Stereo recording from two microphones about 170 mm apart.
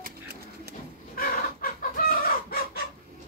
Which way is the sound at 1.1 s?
55° left (ahead or behind).